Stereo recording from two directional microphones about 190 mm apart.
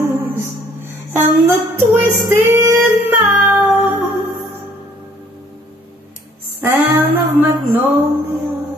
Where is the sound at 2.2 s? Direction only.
15° right (ahead or behind).